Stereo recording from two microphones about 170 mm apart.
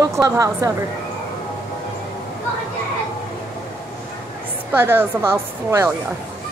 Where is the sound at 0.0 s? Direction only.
20° right (ahead or behind).